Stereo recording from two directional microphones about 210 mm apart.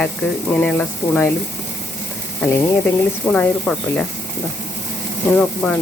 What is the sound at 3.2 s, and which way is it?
Speech, 5° left (ahead or behind).